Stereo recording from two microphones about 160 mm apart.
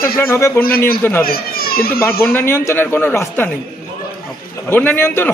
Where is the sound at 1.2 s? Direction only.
70° left (ahead or behind).